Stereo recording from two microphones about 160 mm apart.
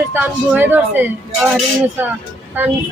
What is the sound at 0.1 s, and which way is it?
Speech, 10° right (ahead or behind).